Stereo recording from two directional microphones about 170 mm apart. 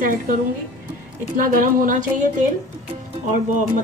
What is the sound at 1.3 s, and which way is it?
Speech, 50° right (ahead or behind).